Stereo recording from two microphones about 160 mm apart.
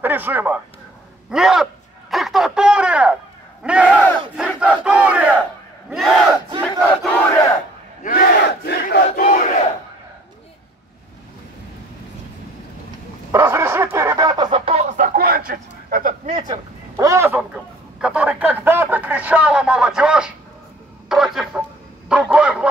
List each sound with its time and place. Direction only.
0.0 s speech: 10° right (ahead or behind)
1.3 s a sound: centre (ahead or behind)
3.6 s battle cry: 5° right (ahead or behind)
4.4 s crowd: 5° right (ahead or behind)
5.9 s battle cry: centre (ahead or behind)
6.6 s crowd: centre (ahead or behind)
8.0 s crowd: 65° left (ahead or behind)
13.3 s a sound: 20° right (ahead or behind); by 15.0 s 40° right (ahead or behind)
15.0 s a sound: 65° right (ahead or behind)
16.4 s speech: 20° right (ahead or behind); by 20.3 s 5° right (ahead or behind)
21.1 s a sound: centre (ahead or behind)
22.1 s honk: 5° right (ahead or behind)